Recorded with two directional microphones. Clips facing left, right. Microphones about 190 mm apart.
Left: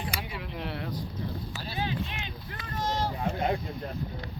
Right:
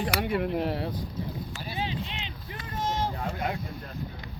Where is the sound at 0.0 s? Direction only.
80° right.